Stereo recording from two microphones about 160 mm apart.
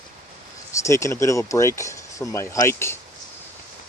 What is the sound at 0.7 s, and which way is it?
Speech, 20° left (ahead or behind).